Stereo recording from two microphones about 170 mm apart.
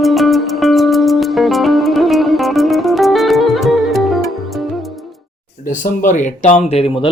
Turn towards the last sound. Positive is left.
turn(degrees=35)  # may be behind; listen again after turning